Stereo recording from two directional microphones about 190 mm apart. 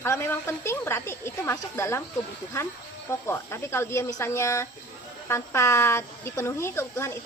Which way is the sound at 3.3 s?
15° left (ahead or behind).